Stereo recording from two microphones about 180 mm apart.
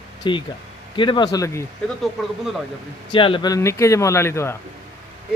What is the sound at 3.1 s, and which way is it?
Speech, 30° left (ahead or behind).